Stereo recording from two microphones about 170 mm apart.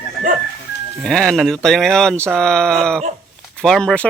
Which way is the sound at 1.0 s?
5° left (ahead or behind).